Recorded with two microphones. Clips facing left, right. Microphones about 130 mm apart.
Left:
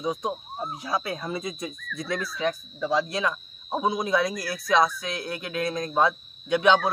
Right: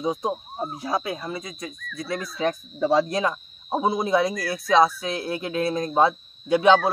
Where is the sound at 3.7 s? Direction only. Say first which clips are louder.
Right 3 dB; 30° right (ahead or behind).